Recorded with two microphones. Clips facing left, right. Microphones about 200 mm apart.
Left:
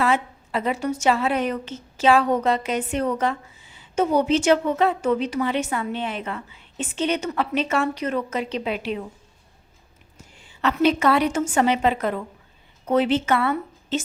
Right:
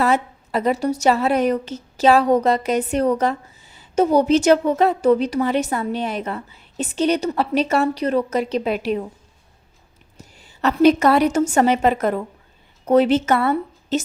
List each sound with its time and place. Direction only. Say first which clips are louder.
0.0 s a woman's voice: right 3 dB; 40° right (ahead or behind)
10.2 s a woman's voice: right 4 dB; 40° right (ahead or behind)